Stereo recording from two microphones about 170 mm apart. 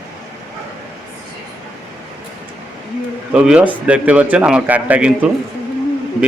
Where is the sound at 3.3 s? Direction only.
5° right (ahead or behind).